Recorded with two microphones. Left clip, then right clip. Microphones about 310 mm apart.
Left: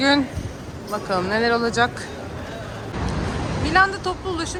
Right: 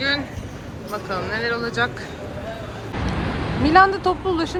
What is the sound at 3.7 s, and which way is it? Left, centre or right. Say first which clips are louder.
Speech: right 4 dB; centre.